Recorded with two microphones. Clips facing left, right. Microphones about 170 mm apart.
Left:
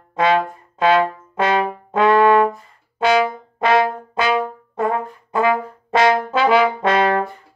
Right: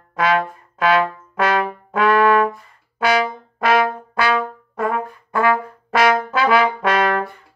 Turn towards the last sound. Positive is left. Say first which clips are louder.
# left 2 dB
turn(degrees=25)  # may be behind; listen again after turning